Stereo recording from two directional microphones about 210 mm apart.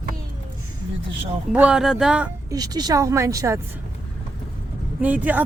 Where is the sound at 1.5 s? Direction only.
5° right (ahead or behind).